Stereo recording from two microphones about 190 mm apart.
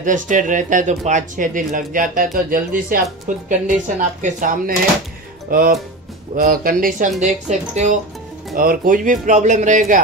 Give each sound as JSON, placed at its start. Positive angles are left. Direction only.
{"t": 0.0, "sound": "speech", "side_deg": -40}